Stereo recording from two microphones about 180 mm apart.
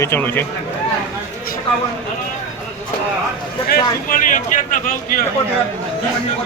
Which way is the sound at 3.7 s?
50° left (ahead or behind).